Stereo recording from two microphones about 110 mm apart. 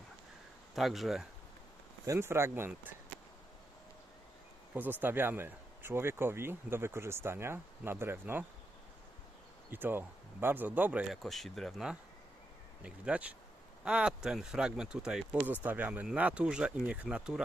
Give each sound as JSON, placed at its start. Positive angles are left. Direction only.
{"t": 0.8, "sound": "speech", "side_deg": 0}
{"t": 2.0, "sound": "speech", "side_deg": -20}
{"t": 4.7, "sound": "speech", "side_deg": -15}
{"t": 9.6, "sound": "speech", "side_deg": -20}
{"t": 11.1, "sound": "speech", "side_deg": 0}